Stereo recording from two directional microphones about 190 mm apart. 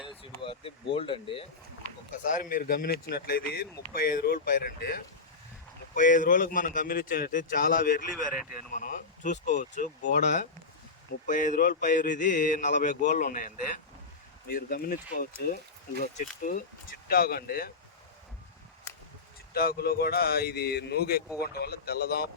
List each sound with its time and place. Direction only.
0.1 s speech: 30° left (ahead or behind)
2.2 s a man's voice: 45° left (ahead or behind)
8.1 s speech: centre (ahead or behind)
8.4 s speech: 45° left (ahead or behind)
11.3 s a man's voice: 45° left (ahead or behind)
19.5 s speech: 55° left (ahead or behind)